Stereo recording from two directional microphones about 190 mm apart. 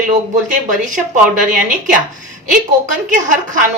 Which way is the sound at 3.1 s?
45° right (ahead or behind).